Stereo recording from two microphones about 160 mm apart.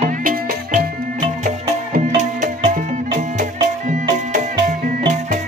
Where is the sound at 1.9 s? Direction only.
55° right (ahead or behind).